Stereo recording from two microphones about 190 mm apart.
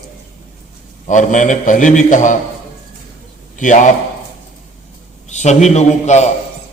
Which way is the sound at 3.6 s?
40° left (ahead or behind).